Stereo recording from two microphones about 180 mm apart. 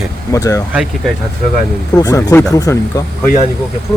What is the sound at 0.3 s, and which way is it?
Speech, 15° left (ahead or behind).